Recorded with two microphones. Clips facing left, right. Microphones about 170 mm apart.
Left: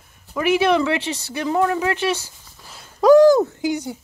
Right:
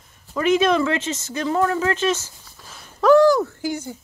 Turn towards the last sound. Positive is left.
turn(degrees=15)  # may be behind; listen again after turning